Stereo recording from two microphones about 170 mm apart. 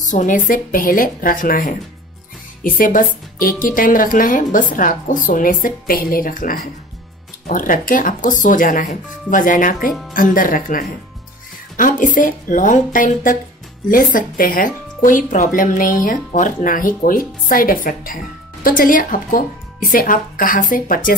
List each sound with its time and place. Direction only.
0.1 s speech: 50° left (ahead or behind)